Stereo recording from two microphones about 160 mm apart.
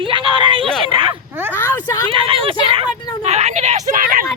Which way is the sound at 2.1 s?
35° right (ahead or behind).